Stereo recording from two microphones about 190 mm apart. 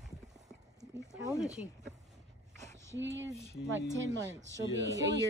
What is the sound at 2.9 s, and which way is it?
Speech, 75° right (ahead or behind).